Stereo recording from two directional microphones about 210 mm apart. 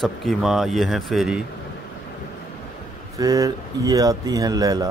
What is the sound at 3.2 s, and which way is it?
Speech, 15° right (ahead or behind).